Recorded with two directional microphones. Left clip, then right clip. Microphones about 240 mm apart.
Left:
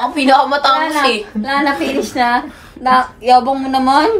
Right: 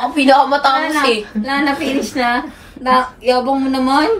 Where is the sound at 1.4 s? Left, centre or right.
Centre.